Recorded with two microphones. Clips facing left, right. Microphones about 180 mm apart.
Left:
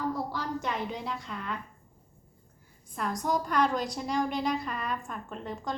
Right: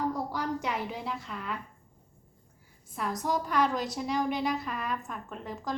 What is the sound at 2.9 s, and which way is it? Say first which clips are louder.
A woman's voice: left 1 dB; 5° right (ahead or behind).